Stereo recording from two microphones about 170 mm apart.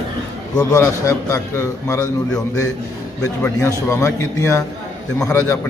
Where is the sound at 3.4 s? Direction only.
15° left (ahead or behind).